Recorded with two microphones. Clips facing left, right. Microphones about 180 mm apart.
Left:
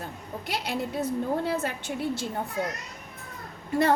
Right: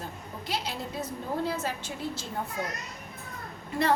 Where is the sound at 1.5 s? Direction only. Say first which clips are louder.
Left 3 dB; 55° left (ahead or behind).